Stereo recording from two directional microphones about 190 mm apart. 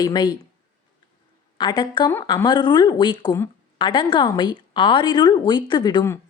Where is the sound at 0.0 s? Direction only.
25° left (ahead or behind).